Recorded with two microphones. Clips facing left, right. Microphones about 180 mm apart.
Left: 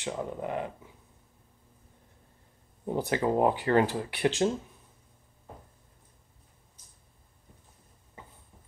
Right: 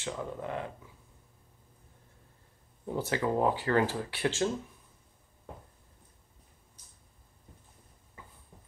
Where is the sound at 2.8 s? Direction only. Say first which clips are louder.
Left 3 dB; 15° left (ahead or behind).